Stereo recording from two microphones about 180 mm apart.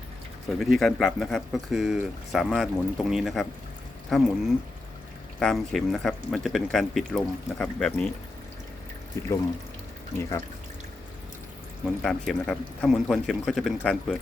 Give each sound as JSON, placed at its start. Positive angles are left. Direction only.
{"t": 0.6, "sound": "speech", "side_deg": 0}
{"t": 5.4, "sound": "speech", "side_deg": 0}
{"t": 9.2, "sound": "speech", "side_deg": 15}
{"t": 12.0, "sound": "speech", "side_deg": 5}